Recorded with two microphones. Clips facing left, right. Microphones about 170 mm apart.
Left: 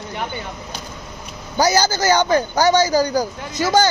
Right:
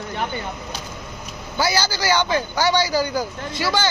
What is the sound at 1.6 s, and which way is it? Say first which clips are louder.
A man's voice: left 5 dB; 45° left (ahead or behind).